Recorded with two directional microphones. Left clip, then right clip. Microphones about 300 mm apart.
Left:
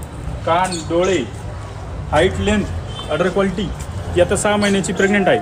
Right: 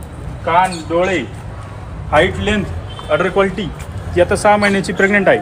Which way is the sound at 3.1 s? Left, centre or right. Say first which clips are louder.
Right 4 dB; centre.